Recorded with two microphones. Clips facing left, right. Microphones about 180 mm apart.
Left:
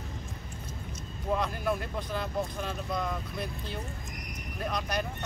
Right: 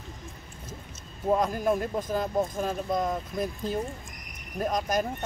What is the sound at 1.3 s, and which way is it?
Speech, 40° right (ahead or behind).